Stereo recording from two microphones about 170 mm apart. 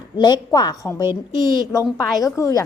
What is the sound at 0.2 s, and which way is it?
A woman's voice, 25° left (ahead or behind).